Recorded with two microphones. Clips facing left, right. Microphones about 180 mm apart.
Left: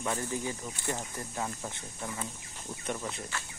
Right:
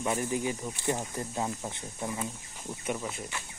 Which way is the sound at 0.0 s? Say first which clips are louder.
Right 4 dB; 15° right (ahead or behind).